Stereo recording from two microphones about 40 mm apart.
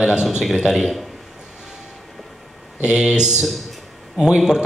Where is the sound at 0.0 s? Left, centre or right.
Centre.